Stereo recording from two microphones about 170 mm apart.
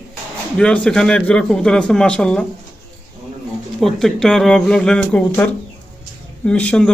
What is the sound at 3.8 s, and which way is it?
Speech, centre (ahead or behind).